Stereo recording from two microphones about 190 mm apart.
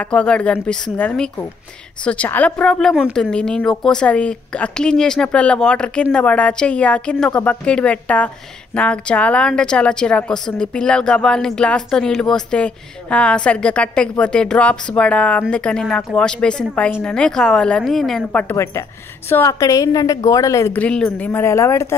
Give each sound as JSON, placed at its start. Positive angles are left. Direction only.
{"t": 0.0, "sound": "a woman's voice", "side_deg": 5}